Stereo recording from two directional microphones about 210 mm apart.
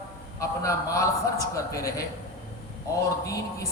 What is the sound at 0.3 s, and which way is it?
A man's voice, 15° left (ahead or behind).